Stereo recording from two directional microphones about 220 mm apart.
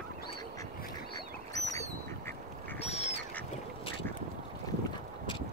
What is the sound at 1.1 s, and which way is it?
Duck, 15° left (ahead or behind).